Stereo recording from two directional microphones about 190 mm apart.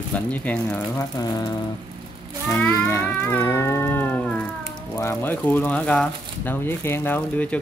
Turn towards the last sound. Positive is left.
turn(degrees=10)  # may be behind; listen again after turning